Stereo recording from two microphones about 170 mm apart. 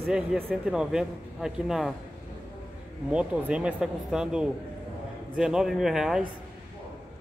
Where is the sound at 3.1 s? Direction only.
5° right (ahead or behind).